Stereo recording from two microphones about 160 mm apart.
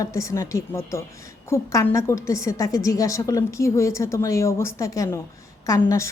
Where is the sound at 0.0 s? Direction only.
20° left (ahead or behind).